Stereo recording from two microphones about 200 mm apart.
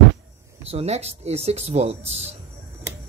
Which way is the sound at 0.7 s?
30° right (ahead or behind).